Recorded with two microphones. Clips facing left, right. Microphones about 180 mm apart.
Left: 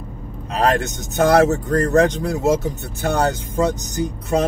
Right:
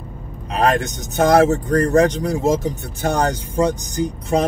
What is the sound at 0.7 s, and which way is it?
Speech, 15° right (ahead or behind).